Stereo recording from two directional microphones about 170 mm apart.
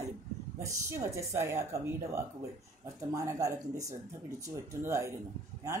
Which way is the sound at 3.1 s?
20° right (ahead or behind).